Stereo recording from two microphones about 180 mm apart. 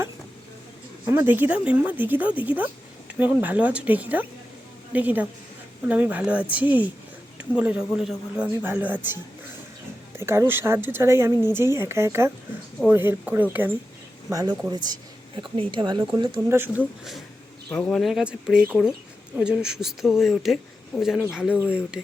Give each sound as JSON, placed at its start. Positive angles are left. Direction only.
{"t": 1.0, "sound": "speech", "side_deg": -10}
{"t": 10.2, "sound": "speech", "side_deg": -15}
{"t": 16.5, "sound": "speech", "side_deg": -10}
{"t": 17.0, "sound": "speech", "side_deg": 0}
{"t": 19.4, "sound": "speech", "side_deg": -5}